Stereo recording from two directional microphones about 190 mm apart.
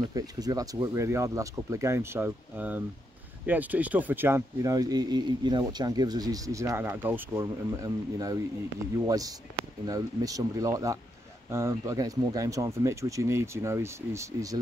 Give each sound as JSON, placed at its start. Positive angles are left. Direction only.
{"t": 0.1, "sound": "speech", "side_deg": -20}